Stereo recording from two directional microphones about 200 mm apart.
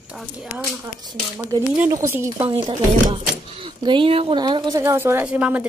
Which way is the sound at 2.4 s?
25° right (ahead or behind).